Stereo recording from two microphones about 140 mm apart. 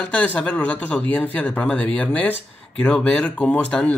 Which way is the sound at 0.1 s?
10° left (ahead or behind).